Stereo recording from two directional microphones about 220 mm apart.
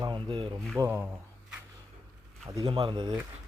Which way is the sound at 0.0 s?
20° right (ahead or behind).